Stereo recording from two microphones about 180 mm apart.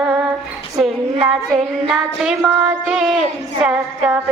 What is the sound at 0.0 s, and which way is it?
Female singing, 5° right (ahead or behind).